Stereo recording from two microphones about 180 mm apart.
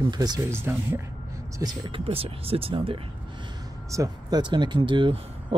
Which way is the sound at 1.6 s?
30° right (ahead or behind).